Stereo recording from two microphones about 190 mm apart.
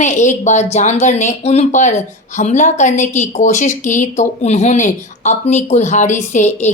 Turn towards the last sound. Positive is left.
turn(degrees=35)  # may be behind; listen again after turning